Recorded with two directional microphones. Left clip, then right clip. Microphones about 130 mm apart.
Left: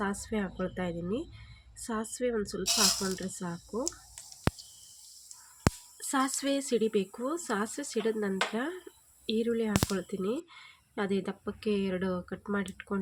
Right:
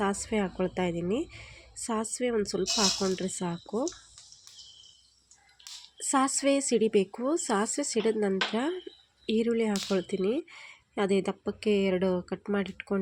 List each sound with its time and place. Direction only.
0.0 s speech: 30° right (ahead or behind)
6.1 s speech: 20° right (ahead or behind)